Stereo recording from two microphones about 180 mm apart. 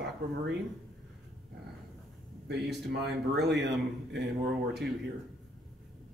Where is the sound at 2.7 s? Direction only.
70° right (ahead or behind).